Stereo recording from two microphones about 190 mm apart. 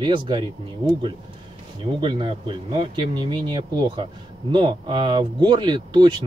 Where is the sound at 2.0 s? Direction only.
25° right (ahead or behind).